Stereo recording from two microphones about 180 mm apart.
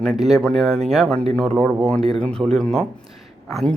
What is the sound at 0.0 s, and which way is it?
A man's voice, centre (ahead or behind).